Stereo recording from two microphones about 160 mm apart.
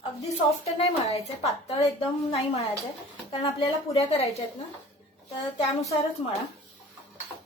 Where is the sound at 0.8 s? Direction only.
40° left (ahead or behind).